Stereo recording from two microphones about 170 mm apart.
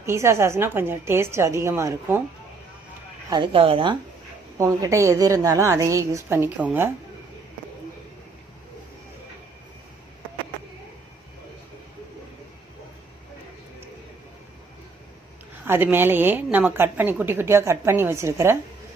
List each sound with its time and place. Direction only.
0.0 s a woman's voice: 15° right (ahead or behind)
3.2 s speech: 25° right (ahead or behind)
4.5 s a woman's voice: 20° right (ahead or behind)
15.6 s a woman's voice: 10° right (ahead or behind)